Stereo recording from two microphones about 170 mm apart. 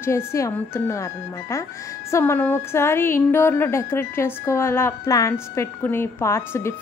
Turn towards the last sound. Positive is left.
turn(degrees=15)  # may be behind; listen again after turning